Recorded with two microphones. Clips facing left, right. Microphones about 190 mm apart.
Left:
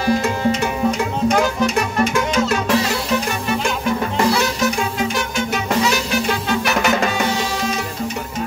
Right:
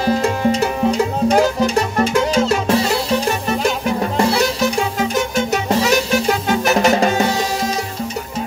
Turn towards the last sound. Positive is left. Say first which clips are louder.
# right 4 dB
turn(degrees=-35)  # may be behind; listen again after turning